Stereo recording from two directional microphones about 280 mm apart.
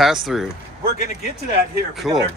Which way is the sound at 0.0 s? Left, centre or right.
Centre.